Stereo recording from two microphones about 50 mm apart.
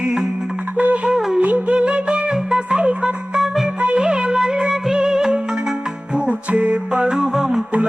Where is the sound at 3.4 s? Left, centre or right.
Centre.